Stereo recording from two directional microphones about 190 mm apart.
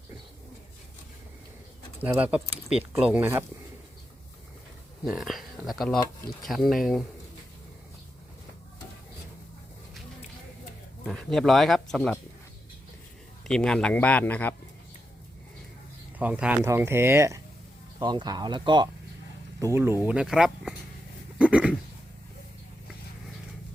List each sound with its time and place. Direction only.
2.0 s speech: 10° right (ahead or behind)
5.0 s speech: centre (ahead or behind)
11.0 s speech: centre (ahead or behind)
13.5 s speech: 5° left (ahead or behind)
16.1 s speech: 5° right (ahead or behind)
21.3 s a sound: 5° right (ahead or behind)